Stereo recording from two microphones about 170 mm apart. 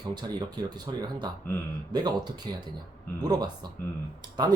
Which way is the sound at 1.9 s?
25° right (ahead or behind).